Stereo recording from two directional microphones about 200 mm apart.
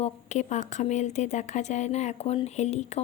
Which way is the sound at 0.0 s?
35° left (ahead or behind).